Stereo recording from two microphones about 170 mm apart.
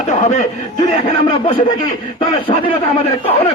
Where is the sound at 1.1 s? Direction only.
30° left (ahead or behind).